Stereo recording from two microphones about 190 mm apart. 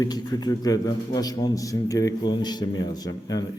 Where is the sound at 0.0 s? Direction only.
20° left (ahead or behind).